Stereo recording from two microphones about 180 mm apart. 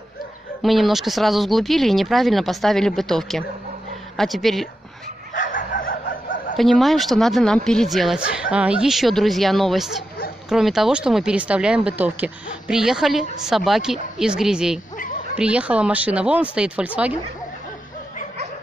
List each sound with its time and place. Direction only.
0.6 s speech: centre (ahead or behind)
5.3 s chicken: 45° left (ahead or behind)
6.5 s speech: centre (ahead or behind)